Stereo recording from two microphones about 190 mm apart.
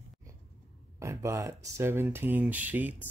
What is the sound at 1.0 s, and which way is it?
Speech, 15° right (ahead or behind).